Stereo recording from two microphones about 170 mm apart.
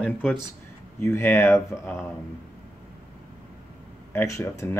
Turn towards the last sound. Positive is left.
turn(degrees=15)  # may be behind; listen again after turning